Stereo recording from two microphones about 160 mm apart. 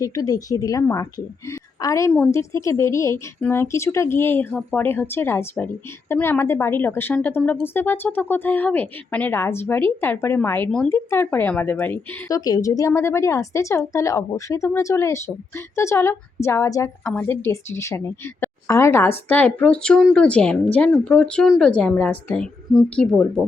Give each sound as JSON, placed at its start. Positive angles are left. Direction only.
{"t": 0.0, "sound": "a woman's voice", "side_deg": 20}